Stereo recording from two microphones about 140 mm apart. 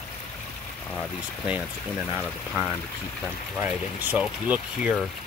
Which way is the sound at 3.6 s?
10° right (ahead or behind).